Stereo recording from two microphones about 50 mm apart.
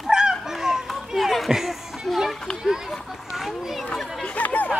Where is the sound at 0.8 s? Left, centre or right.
Centre.